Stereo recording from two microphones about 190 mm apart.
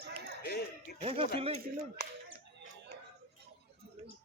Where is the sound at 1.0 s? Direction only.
30° right (ahead or behind).